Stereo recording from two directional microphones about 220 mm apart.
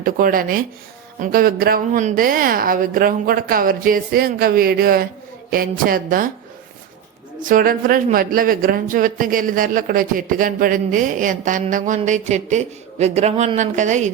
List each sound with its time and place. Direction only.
0.0 s speech: 40° right (ahead or behind)
7.4 s speech: 40° right (ahead or behind)